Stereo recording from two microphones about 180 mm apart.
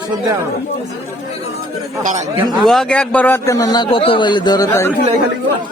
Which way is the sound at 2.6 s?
Centre (ahead or behind).